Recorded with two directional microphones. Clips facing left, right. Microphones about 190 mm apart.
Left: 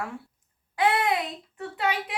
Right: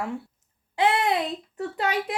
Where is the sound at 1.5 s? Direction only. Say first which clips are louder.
Right 1 dB; 40° right (ahead or behind).